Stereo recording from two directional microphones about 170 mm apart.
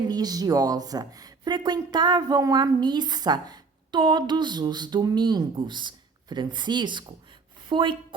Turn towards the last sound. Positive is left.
turn(degrees=-30)  # may be behind; listen again after turning